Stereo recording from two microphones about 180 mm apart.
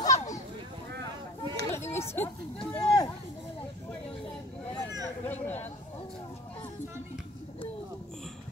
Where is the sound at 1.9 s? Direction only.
15° left (ahead or behind).